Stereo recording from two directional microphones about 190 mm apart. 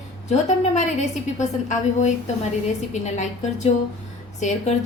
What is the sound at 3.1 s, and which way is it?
Speech, 40° left (ahead or behind).